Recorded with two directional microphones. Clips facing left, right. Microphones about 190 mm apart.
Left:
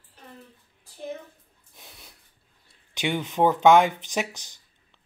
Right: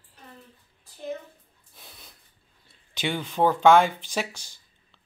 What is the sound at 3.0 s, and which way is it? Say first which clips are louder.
Speech: left 1 dB; 15° left (ahead or behind).